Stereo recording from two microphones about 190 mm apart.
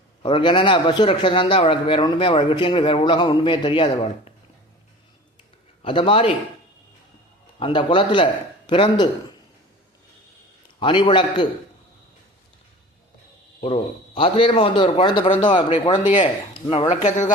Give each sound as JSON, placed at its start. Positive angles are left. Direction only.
{"t": 0.2, "sound": "a man's voice", "side_deg": 25}
{"t": 5.8, "sound": "a man's voice", "side_deg": 25}
{"t": 7.6, "sound": "a man's voice", "side_deg": 25}
{"t": 10.8, "sound": "a man's voice", "side_deg": 25}
{"t": 14.2, "sound": "a man's voice", "side_deg": 30}
{"t": 16.9, "sound": "speech", "side_deg": 40}